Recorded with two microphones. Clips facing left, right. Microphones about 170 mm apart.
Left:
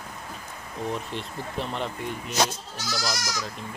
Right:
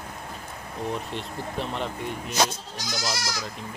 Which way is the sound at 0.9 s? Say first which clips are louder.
Even; centre (ahead or behind).